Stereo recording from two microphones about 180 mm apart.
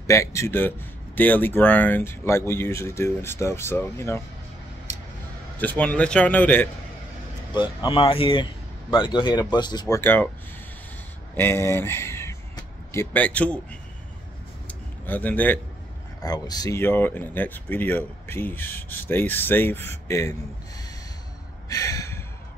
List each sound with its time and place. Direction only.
0.0 s speech: 15° left (ahead or behind)
5.6 s speech: 10° left (ahead or behind)
7.5 s speech: 25° left (ahead or behind); by 10.3 s 10° left (ahead or behind)
11.3 s speech: 15° left (ahead or behind)
14.7 s a sound: 10° left (ahead or behind)
16.2 s speech: 20° left (ahead or behind)
21.6 s gasp: 20° left (ahead or behind)